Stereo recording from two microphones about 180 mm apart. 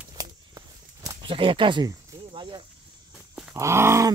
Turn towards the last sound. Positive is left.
turn(degrees=-15)  # may be behind; listen again after turning